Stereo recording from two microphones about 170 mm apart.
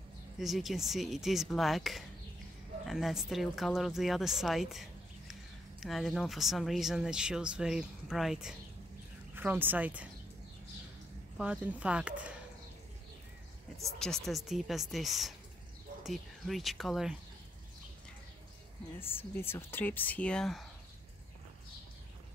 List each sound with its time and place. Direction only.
0.4 s speech: centre (ahead or behind)
11.3 s speech: 5° right (ahead or behind)
13.9 s speech: 5° left (ahead or behind)
19.3 s speech: 15° left (ahead or behind)